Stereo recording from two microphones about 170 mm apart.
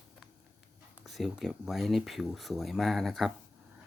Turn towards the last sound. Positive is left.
turn(degrees=0)  # may be behind; listen again after turning